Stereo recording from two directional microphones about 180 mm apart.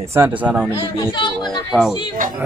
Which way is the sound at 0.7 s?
25° left (ahead or behind).